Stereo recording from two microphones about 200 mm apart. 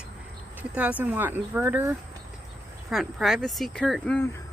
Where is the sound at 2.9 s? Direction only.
Centre (ahead or behind).